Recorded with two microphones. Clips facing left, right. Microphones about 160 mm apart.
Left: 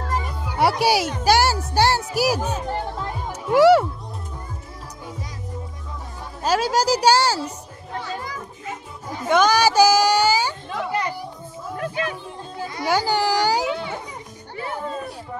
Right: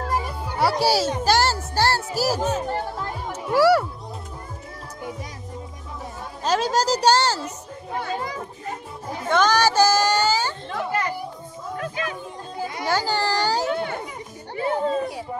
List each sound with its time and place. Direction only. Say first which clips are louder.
0.6 s speech: left 1 dB; 20° left (ahead or behind)
3.3 s music: left 4 dB; 20° left (ahead or behind)
6.4 s speech: left 1 dB; 5° left (ahead or behind)
8.2 s children playing: right 3 dB; 25° right (ahead or behind)
9.3 s a sound: left 2 dB; 10° left (ahead or behind)
12.8 s baby cry: left 3 dB; 15° left (ahead or behind)
13.7 s children playing: right 1 dB; 55° right (ahead or behind)
14.5 s music: right 6 dB; 25° right (ahead or behind)